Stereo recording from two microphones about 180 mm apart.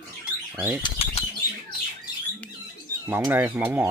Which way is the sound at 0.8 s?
30° left (ahead or behind).